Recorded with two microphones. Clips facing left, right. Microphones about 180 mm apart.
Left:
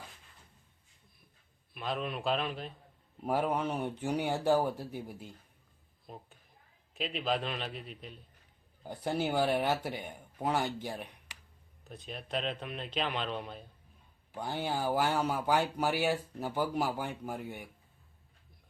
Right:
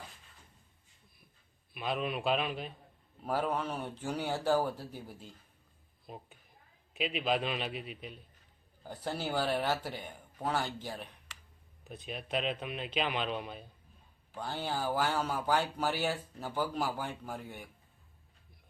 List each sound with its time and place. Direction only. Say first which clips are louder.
1.7 s a man's voice: right 1 dB; 5° right (ahead or behind)
3.2 s speech: left 2 dB; 15° left (ahead or behind)
6.1 s a man's voice: right 1 dB; 5° right (ahead or behind)
8.8 s speech: left 4 dB; 10° left (ahead or behind)
11.9 s a man's voice: right 1 dB; 5° right (ahead or behind)
14.3 s speech: left 2 dB; 15° left (ahead or behind)